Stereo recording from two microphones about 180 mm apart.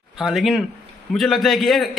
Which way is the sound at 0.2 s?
Centre (ahead or behind).